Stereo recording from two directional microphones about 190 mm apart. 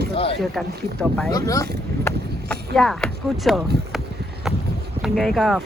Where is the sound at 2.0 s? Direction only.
5° left (ahead or behind).